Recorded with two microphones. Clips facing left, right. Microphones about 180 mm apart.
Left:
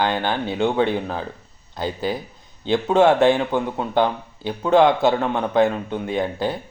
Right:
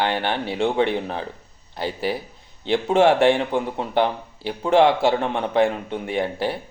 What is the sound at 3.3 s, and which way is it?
Speech, 25° right (ahead or behind).